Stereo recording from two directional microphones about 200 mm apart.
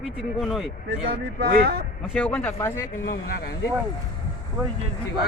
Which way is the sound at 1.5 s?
50° right (ahead or behind).